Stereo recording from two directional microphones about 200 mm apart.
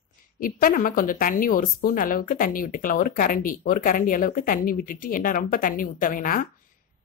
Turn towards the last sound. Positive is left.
turn(degrees=45)  # may be behind; listen again after turning